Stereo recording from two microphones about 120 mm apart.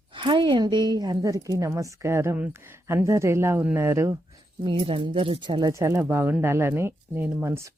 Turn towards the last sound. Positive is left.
turn(degrees=-20)  # may be behind; listen again after turning